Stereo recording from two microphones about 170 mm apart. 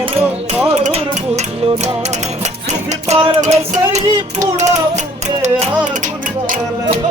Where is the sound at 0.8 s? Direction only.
35° right (ahead or behind); by 6.9 s 50° right (ahead or behind).